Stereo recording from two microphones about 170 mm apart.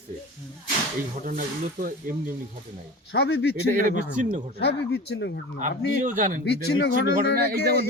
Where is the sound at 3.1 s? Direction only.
75° left (ahead or behind).